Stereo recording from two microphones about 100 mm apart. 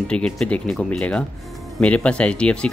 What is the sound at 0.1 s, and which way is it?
Speech, 10° left (ahead or behind).